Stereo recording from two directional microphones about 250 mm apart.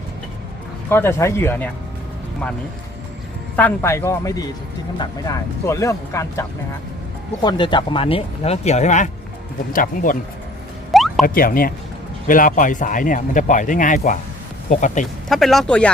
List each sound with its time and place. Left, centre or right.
0.9 s speech: centre
3.5 s speech: centre
7.4 s speech: centre
10.9 s a sound: centre
11.3 s speech: left
15.3 s speech: centre